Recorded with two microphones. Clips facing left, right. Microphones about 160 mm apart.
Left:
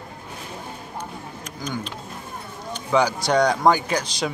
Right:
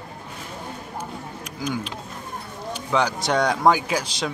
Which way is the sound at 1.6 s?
5° right (ahead or behind).